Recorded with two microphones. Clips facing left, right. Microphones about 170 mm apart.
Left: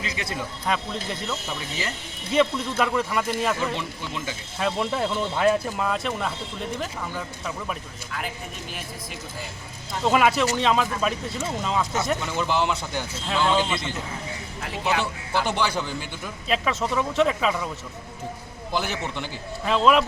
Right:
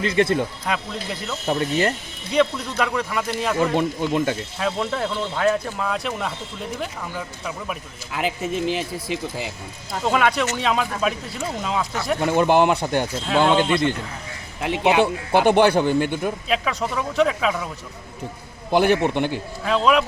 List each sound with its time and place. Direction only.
0.0 s speech: 50° right (ahead or behind)
0.6 s speech: centre (ahead or behind)
1.5 s speech: 60° right (ahead or behind)
2.3 s speech: centre (ahead or behind)
3.6 s speech: 55° right (ahead or behind)
4.5 s speech: centre (ahead or behind)
8.1 s speech: 90° right
10.0 s speech: 5° left (ahead or behind)
12.2 s speech: 55° right (ahead or behind)
14.6 s speech: 70° right (ahead or behind)
16.5 s speech: centre (ahead or behind)
18.7 s speech: 60° right (ahead or behind)
19.6 s speech: centre (ahead or behind)